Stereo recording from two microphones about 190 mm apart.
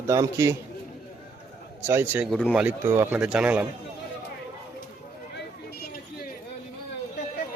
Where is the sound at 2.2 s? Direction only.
Centre (ahead or behind).